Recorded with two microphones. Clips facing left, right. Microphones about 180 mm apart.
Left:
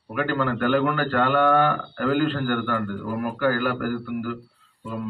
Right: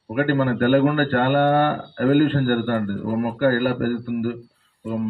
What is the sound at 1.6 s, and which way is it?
Speech, 45° right (ahead or behind).